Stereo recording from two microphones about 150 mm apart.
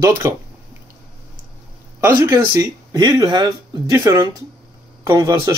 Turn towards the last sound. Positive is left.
turn(degrees=-20)  # may be behind; listen again after turning